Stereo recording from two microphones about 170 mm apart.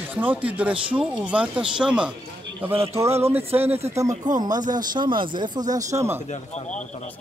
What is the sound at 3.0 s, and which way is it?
Speech, 15° right (ahead or behind).